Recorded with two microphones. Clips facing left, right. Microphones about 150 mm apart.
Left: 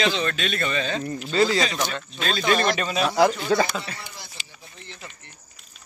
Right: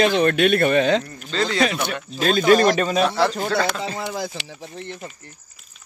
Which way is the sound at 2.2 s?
45° right (ahead or behind).